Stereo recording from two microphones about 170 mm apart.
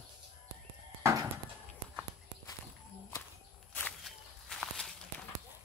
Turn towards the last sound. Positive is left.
turn(degrees=0)  # may be behind; listen again after turning